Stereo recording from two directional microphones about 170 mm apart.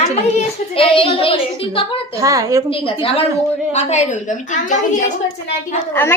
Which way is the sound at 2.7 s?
35° left (ahead or behind).